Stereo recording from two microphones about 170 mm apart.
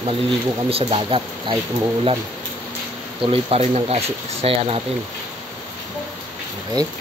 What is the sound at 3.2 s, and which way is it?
Speech, 40° right (ahead or behind).